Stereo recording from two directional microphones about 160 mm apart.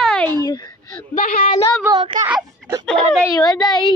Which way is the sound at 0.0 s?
5° left (ahead or behind).